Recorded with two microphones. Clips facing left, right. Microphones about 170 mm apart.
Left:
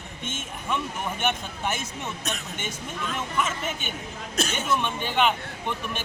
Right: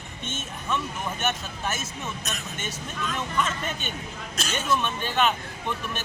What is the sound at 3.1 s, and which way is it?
Speech, 10° left (ahead or behind).